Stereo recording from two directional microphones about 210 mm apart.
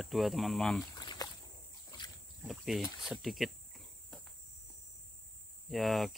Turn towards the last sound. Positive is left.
turn(degrees=0)  # may be behind; listen again after turning